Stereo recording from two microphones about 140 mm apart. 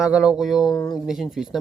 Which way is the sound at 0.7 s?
30° left (ahead or behind).